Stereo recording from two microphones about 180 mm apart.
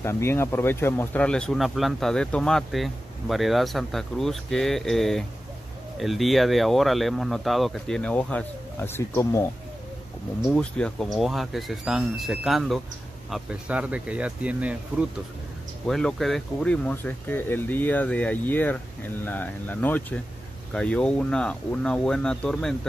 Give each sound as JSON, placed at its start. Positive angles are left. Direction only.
{"t": 0.0, "sound": "speech", "side_deg": 15}
{"t": 10.5, "sound": "speech", "side_deg": 5}